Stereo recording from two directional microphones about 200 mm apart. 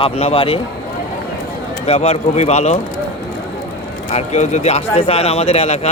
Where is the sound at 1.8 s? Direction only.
30° left (ahead or behind).